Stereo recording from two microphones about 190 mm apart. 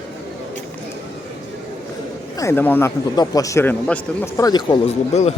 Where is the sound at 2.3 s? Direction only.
15° left (ahead or behind).